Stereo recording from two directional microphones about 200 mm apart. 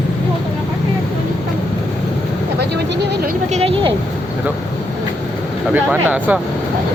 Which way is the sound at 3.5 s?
30° right (ahead or behind).